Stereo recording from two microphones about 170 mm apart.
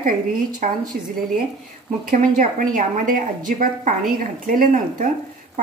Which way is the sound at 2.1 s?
55° right (ahead or behind).